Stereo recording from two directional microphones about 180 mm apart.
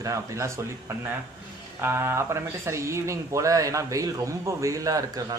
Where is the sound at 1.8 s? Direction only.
15° right (ahead or behind).